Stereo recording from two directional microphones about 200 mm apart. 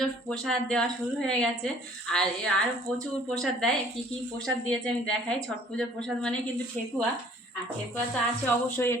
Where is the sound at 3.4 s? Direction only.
Centre (ahead or behind).